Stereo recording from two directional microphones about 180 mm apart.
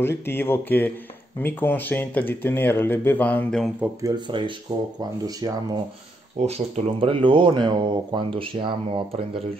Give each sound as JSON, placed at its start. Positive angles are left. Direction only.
{"t": 0.0, "sound": "speech", "side_deg": 10}
{"t": 3.8, "sound": "speech", "side_deg": -20}
{"t": 6.4, "sound": "speech", "side_deg": -35}